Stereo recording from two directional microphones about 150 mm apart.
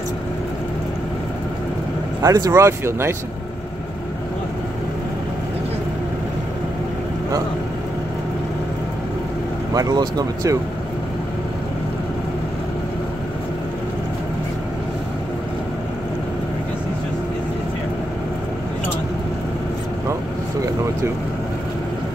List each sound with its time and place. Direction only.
2.2 s speech: 20° right (ahead or behind)
9.8 s speech: 25° right (ahead or behind)